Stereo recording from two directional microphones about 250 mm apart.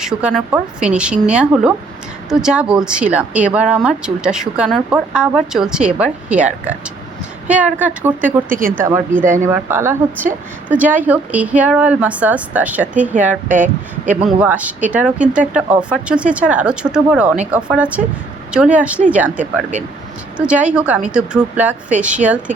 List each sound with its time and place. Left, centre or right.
0.0 s a woman's voice: centre
8.4 s speech: right
8.8 s a woman's voice: centre
9.2 s speech: right
9.5 s a woman's voice: centre
13.5 s speech: right
14.3 s speech: centre